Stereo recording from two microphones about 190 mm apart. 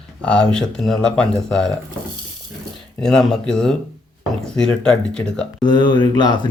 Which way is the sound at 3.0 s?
5° left (ahead or behind).